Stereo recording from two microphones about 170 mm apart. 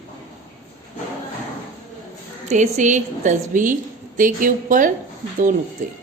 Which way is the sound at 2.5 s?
45° right (ahead or behind).